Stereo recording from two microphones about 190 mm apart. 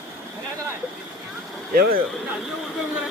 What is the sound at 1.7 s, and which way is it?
Speech, 50° right (ahead or behind).